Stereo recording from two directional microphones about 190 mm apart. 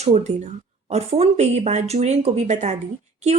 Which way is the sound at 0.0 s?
35° right (ahead or behind).